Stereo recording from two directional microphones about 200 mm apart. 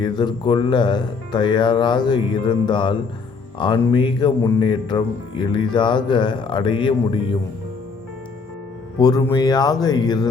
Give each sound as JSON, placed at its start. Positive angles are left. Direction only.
{"t": 0.0, "sound": "speech", "side_deg": 20}
{"t": 9.0, "sound": "speech", "side_deg": 20}